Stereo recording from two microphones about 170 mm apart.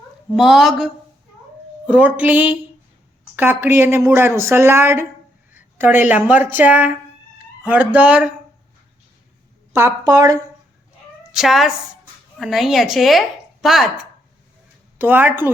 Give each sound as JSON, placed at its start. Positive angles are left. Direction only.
{"t": 0.3, "sound": "a woman's voice", "side_deg": 0}
{"t": 1.9, "sound": "speech", "side_deg": -10}
{"t": 9.7, "sound": "a woman's voice", "side_deg": -20}
{"t": 11.3, "sound": "a woman's voice", "side_deg": 0}